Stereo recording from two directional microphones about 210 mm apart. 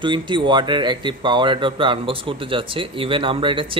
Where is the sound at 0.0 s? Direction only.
20° right (ahead or behind).